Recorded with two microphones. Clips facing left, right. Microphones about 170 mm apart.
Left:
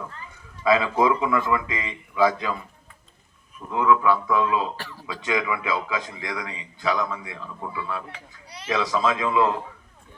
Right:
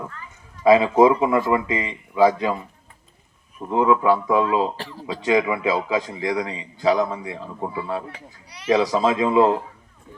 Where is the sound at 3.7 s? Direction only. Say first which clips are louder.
Right 3 dB; 30° right (ahead or behind).